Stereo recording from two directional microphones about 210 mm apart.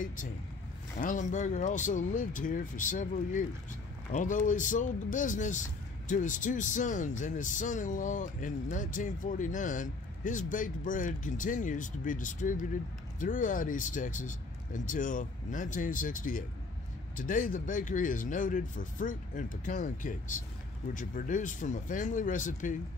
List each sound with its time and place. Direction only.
0.0 s speech: 40° left (ahead or behind)